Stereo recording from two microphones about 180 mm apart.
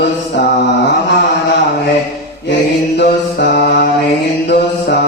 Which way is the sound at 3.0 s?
65° left (ahead or behind).